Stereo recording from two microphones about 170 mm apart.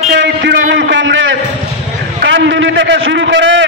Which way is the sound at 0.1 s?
90° right.